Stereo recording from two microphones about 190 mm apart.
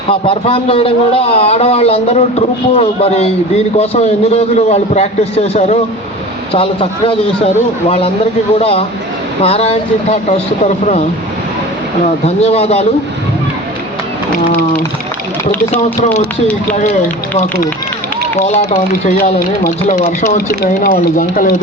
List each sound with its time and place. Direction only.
0.1 s a man's voice: 30° left (ahead or behind)
12.2 s a man's voice: 35° left (ahead or behind)
15.5 s speech: 10° left (ahead or behind)
17.3 s a man's voice: 45° left (ahead or behind)